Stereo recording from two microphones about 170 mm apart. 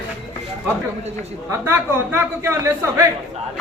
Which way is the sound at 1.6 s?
10° right (ahead or behind).